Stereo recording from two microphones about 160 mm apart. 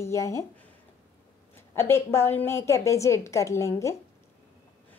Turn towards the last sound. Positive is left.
turn(degrees=20)  # may be behind; listen again after turning